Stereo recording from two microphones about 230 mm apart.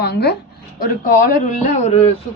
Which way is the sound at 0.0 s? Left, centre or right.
Left.